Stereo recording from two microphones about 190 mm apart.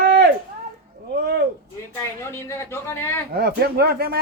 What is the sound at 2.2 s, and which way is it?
A man's voice, 15° left (ahead or behind).